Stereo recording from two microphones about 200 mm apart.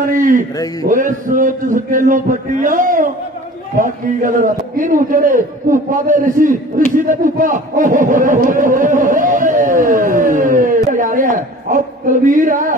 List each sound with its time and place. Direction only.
0.1 s a man's voice: 40° right (ahead or behind)